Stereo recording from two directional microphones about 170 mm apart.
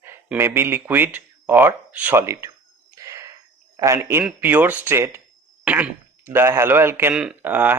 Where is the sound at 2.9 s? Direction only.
20° right (ahead or behind).